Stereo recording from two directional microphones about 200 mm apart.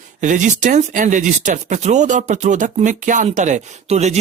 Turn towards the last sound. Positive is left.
turn(degrees=-35)  # may be behind; listen again after turning